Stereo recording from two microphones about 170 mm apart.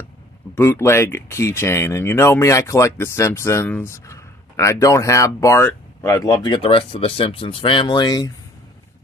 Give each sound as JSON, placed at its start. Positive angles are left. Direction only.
{"t": 0.6, "sound": "speech", "side_deg": 15}